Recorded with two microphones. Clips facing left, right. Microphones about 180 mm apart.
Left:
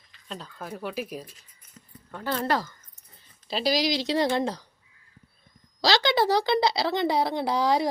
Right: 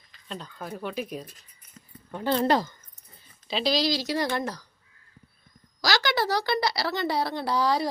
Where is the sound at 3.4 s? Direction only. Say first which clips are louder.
Even; 5° left (ahead or behind); by 4.6 s 25° left (ahead or behind).